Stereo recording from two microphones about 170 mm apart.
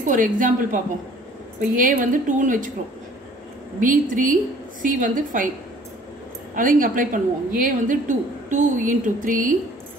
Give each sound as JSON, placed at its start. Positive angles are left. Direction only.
{"t": 0.0, "sound": "a woman's voice", "side_deg": -50}
{"t": 3.8, "sound": "a woman's voice", "side_deg": -50}
{"t": 6.5, "sound": "a woman's voice", "side_deg": -55}